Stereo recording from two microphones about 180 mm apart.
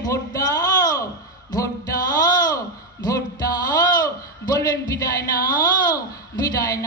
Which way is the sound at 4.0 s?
20° left (ahead or behind).